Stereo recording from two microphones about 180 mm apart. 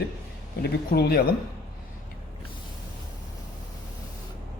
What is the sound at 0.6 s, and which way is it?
Speech, 65° left (ahead or behind).